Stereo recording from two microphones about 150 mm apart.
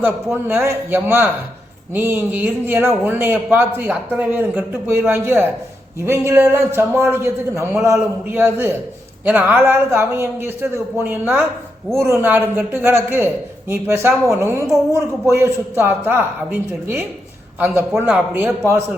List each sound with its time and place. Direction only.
0.0 s speech: 10° right (ahead or behind)